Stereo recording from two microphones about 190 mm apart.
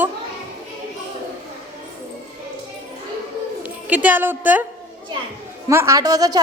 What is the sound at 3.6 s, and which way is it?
A woman's voice, 10° right (ahead or behind).